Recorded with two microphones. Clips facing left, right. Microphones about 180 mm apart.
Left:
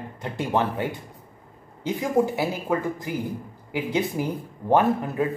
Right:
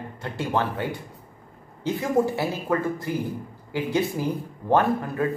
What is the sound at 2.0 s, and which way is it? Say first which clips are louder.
Speech: left 1 dB; 15° left (ahead or behind).